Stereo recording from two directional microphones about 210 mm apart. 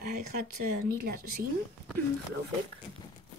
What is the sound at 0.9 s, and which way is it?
Speech, 45° right (ahead or behind).